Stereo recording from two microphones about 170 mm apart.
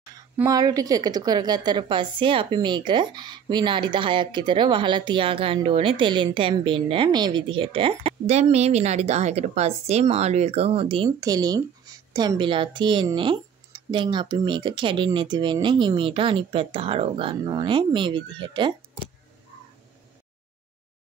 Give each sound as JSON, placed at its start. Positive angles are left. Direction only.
{"t": 0.5, "sound": "a woman's voice", "side_deg": -20}
{"t": 11.1, "sound": "a woman's voice", "side_deg": -25}